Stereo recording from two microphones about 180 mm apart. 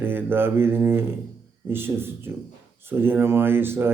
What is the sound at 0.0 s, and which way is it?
Speech, 10° right (ahead or behind).